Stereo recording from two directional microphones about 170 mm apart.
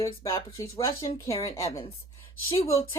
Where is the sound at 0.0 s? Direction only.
20° left (ahead or behind).